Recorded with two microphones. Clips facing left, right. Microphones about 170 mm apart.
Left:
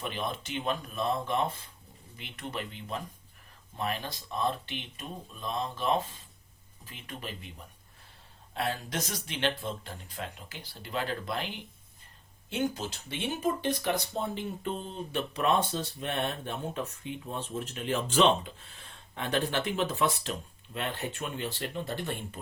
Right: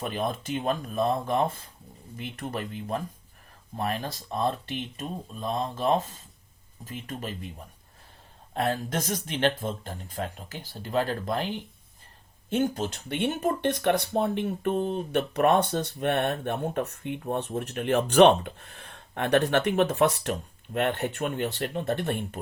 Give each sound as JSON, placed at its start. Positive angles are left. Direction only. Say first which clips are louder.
{"t": 0.1, "sound": "speech", "louder": "right 5 dB", "side_deg": -45}
{"t": 8.5, "sound": "speech", "louder": "right 5 dB", "side_deg": -50}
{"t": 12.5, "sound": "speech", "louder": "right 5 dB", "side_deg": -50}